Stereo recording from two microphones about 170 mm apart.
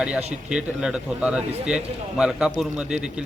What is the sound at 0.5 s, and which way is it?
A man's voice, 5° right (ahead or behind).